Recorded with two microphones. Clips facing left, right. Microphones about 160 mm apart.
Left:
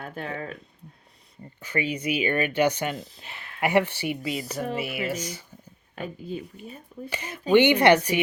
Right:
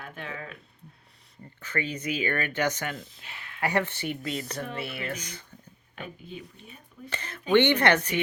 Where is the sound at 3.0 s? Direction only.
35° left (ahead or behind).